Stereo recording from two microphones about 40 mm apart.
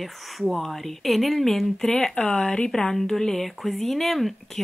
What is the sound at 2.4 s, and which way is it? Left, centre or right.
Speech, left.